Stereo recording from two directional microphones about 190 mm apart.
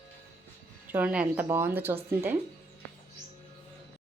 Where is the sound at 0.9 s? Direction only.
10° right (ahead or behind).